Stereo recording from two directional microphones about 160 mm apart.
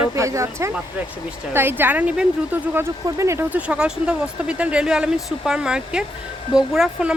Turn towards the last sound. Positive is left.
turn(degrees=-5)  # may be behind; listen again after turning